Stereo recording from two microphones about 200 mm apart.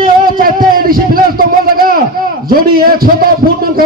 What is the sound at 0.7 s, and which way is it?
A man's voice, 45° right (ahead or behind).